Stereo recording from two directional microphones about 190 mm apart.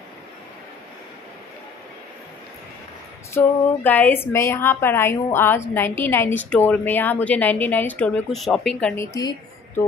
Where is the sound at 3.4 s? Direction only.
10° left (ahead or behind).